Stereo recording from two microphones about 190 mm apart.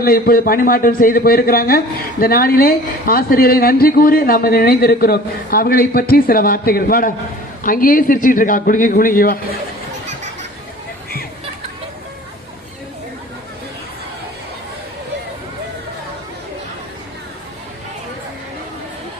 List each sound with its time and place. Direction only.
0.0 s a man's voice: 50° left (ahead or behind)